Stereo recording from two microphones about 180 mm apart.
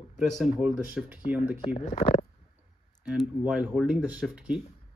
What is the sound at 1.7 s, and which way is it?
Speech, 40° left (ahead or behind).